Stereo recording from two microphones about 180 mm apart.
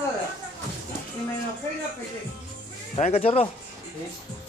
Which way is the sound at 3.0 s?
35° left (ahead or behind).